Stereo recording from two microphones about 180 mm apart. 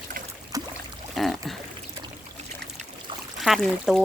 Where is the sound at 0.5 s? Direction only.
20° right (ahead or behind).